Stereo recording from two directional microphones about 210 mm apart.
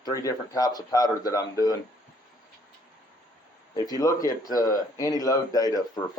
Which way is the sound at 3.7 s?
15° left (ahead or behind).